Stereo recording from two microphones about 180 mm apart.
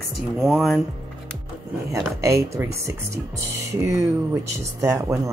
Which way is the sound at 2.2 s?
15° right (ahead or behind).